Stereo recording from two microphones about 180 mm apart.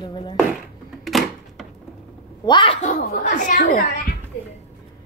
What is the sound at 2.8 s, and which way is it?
Speech, 40° left (ahead or behind).